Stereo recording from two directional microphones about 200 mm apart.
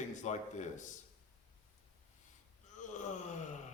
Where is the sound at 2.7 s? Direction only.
40° left (ahead or behind).